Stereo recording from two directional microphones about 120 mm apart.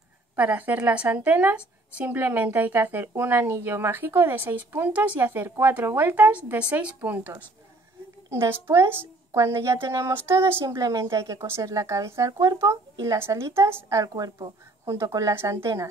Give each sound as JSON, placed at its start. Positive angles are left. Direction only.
{"t": 0.4, "sound": "a woman's voice", "side_deg": -15}